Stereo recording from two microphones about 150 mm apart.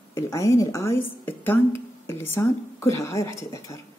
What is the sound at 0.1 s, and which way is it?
A woman's voice, 20° left (ahead or behind).